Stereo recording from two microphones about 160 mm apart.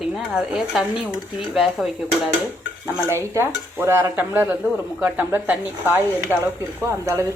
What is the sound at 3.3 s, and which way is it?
Speech, 15° right (ahead or behind).